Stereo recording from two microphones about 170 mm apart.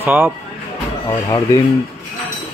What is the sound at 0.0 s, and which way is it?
Speech, 10° right (ahead or behind).